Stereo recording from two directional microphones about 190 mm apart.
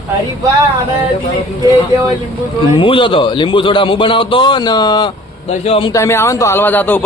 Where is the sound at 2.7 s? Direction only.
25° left (ahead or behind).